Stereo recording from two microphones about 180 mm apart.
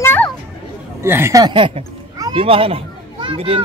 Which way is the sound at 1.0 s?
15° right (ahead or behind).